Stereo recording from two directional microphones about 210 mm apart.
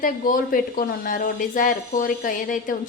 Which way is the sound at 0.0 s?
40° left (ahead or behind).